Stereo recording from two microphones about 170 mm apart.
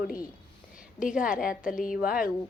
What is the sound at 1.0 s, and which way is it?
A woman's voice, 50° left (ahead or behind).